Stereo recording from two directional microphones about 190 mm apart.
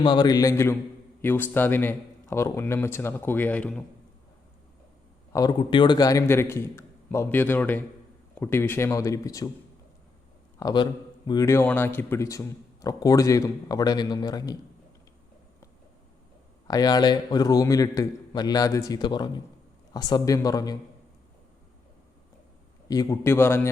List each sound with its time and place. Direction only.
0.0 s a man's voice: 25° left (ahead or behind); by 3.8 s 5° left (ahead or behind)
5.3 s a man's voice: 20° left (ahead or behind)
10.6 s a man's voice: 20° left (ahead or behind)
16.6 s a man's voice: 20° left (ahead or behind)
22.9 s a man's voice: 20° left (ahead or behind)